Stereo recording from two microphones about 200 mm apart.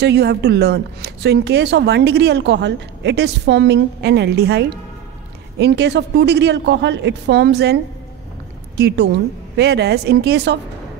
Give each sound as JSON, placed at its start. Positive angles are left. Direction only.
{"t": 0.0, "sound": "a woman's voice", "side_deg": -55}